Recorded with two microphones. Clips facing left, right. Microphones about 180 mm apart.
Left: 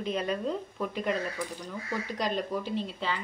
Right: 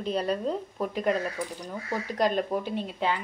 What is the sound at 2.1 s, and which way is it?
Speech, 45° right (ahead or behind).